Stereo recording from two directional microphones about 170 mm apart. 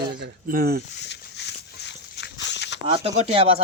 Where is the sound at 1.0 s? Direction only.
85° left.